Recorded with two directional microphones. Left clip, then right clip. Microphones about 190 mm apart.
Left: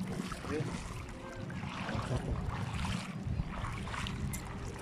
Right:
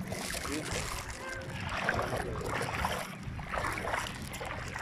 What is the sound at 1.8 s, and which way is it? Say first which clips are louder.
Boat: right 8 dB; 50° right (ahead or behind).